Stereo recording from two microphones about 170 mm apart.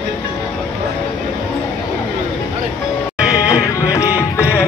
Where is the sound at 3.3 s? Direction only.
20° left (ahead or behind).